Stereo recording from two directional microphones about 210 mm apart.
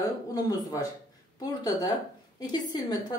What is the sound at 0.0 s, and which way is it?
Speech, 15° left (ahead or behind).